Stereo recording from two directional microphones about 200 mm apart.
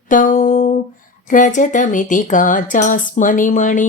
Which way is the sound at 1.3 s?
40° left (ahead or behind).